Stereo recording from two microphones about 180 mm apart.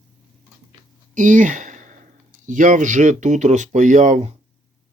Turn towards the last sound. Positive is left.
turn(degrees=-40)  # may be behind; listen again after turning